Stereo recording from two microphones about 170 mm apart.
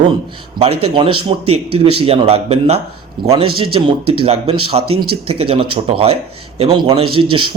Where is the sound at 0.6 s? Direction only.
35° right (ahead or behind).